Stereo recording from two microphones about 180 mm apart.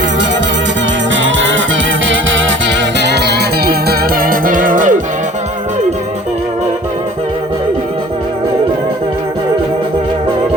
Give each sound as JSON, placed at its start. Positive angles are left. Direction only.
{"t": 1.1, "sound": "music", "side_deg": -90}